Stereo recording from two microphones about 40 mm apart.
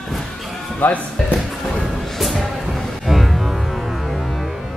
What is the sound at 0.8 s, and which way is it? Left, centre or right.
Speech, left.